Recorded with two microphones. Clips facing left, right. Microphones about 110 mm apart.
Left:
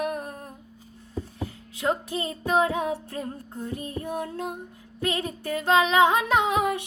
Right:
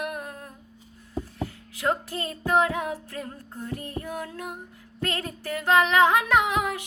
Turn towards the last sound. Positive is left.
turn(degrees=25)  # may be behind; listen again after turning